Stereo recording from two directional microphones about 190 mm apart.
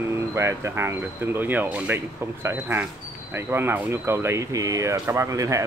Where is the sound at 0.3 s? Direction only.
15° right (ahead or behind).